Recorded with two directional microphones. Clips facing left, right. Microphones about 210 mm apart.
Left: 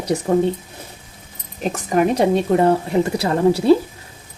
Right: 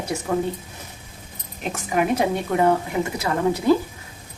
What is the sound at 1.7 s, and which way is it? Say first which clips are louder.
A woman's voice: left 4 dB; 35° left (ahead or behind).